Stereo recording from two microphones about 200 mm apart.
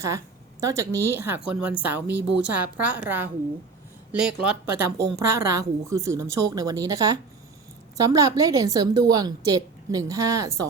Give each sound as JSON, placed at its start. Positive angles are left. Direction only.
{"t": 0.6, "sound": "a woman's voice", "side_deg": -15}